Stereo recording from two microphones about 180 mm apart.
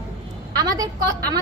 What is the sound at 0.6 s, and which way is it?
Speech, 20° right (ahead or behind).